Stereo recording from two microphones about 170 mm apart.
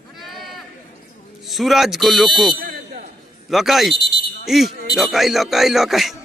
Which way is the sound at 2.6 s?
55° right (ahead or behind).